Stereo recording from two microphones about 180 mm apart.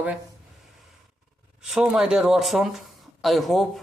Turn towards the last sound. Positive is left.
turn(degrees=0)  # may be behind; listen again after turning